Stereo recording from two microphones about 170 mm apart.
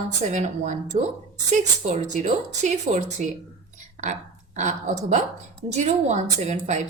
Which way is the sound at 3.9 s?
45° right (ahead or behind).